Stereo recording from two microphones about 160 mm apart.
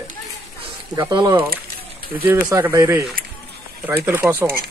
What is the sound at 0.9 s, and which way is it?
Speech, 25° right (ahead or behind).